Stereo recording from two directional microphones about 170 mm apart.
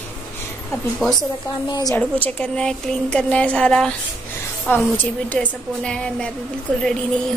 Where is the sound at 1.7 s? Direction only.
20° left (ahead or behind).